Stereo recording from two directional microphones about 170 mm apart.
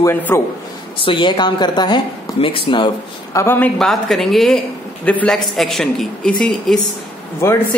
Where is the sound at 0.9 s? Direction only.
30° left (ahead or behind).